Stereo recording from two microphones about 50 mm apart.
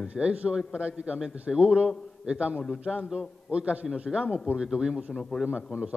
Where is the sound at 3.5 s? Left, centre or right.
Right.